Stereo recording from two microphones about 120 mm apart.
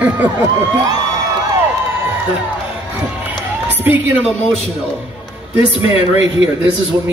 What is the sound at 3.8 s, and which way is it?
Speech, 15° right (ahead or behind).